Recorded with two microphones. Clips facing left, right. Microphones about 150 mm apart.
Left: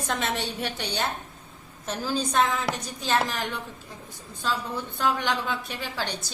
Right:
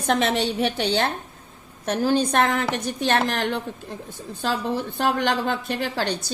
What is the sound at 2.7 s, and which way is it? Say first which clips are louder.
Speech: right 4 dB; 85° right.